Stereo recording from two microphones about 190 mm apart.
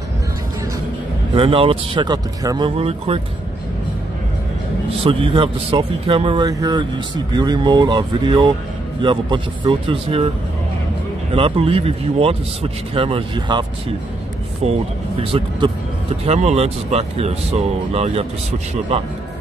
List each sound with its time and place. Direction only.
1.3 s speech: 30° right (ahead or behind)
5.0 s speech: 30° right (ahead or behind)
11.3 s speech: 30° right (ahead or behind)
15.6 s speech: 25° right (ahead or behind)